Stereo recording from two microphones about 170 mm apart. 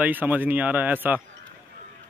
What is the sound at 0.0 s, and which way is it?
Speech, 10° right (ahead or behind).